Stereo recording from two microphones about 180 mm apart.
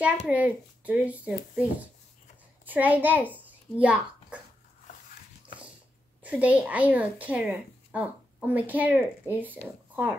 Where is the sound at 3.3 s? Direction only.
10° right (ahead or behind).